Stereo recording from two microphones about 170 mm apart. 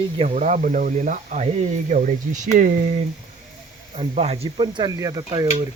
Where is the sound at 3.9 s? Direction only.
35° right (ahead or behind).